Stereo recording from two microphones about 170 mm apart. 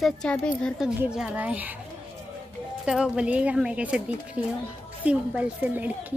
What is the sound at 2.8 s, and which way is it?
Speech, 5° right (ahead or behind).